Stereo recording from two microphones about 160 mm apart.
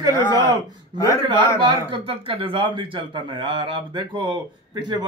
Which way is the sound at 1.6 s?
30° right (ahead or behind).